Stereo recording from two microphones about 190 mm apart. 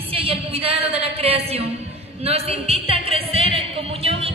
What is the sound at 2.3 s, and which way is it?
Music, 30° right (ahead or behind).